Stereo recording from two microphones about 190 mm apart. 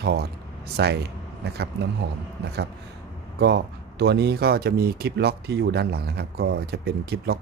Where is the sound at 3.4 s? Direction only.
60° right (ahead or behind).